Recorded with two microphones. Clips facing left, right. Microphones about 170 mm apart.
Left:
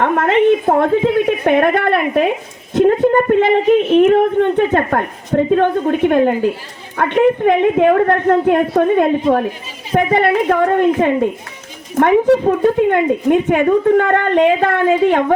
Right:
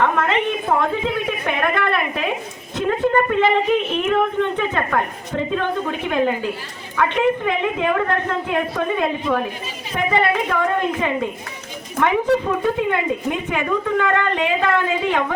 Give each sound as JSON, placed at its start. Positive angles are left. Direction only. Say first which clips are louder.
{"t": 0.0, "sound": "a woman's voice", "louder": "left 6 dB", "side_deg": 55}